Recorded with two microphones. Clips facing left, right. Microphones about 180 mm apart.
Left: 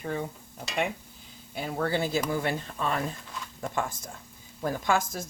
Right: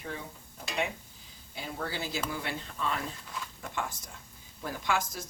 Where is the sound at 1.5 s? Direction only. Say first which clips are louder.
Left 8 dB; 60° left (ahead or behind).